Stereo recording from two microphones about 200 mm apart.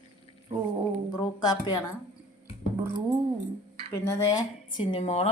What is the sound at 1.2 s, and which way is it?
Speech, 20° left (ahead or behind).